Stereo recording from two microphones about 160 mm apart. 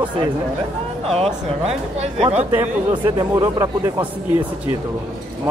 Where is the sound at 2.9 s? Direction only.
30° right (ahead or behind).